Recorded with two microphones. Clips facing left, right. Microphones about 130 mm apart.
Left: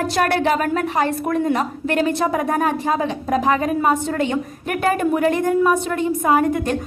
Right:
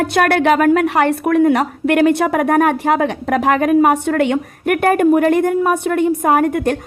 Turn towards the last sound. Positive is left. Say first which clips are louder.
# right 3 dB
turn(degrees=-60)  # may be behind; listen again after turning